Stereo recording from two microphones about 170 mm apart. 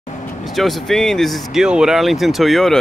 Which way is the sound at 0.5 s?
Centre (ahead or behind).